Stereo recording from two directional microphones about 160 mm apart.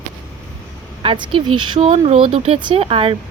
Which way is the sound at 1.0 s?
30° right (ahead or behind).